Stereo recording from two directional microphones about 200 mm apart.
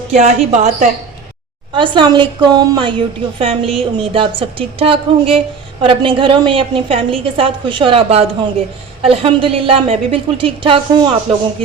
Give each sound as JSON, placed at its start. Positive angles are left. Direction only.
{"t": 0.1, "sound": "a woman's voice", "side_deg": -35}
{"t": 1.7, "sound": "a woman's voice", "side_deg": -25}